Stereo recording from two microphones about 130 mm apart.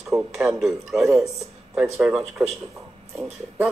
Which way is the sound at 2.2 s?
55° right (ahead or behind).